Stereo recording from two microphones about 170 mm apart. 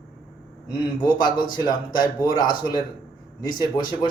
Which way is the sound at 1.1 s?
25° left (ahead or behind).